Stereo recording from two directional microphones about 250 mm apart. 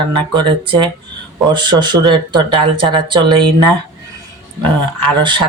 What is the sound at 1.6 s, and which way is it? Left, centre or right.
Speech, centre.